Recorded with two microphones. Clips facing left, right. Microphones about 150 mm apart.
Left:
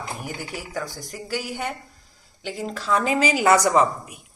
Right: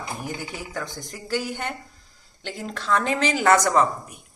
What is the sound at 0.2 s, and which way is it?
A woman's voice, 5° left (ahead or behind).